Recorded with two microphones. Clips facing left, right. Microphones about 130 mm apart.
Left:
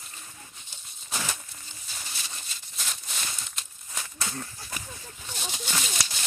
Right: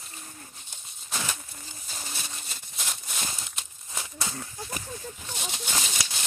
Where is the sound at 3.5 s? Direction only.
15° right (ahead or behind).